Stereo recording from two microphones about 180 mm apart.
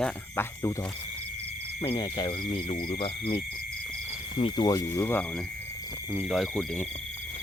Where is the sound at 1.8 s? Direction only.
25° left (ahead or behind).